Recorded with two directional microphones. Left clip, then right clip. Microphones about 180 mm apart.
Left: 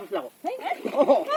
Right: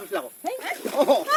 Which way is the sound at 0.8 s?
Centre (ahead or behind).